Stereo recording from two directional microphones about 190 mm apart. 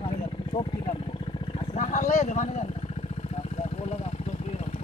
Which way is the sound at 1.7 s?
40° left (ahead or behind).